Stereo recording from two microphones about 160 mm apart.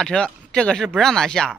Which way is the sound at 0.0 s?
5° left (ahead or behind).